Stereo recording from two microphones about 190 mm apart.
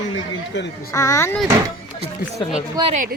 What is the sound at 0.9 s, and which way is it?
Speech, 15° left (ahead or behind).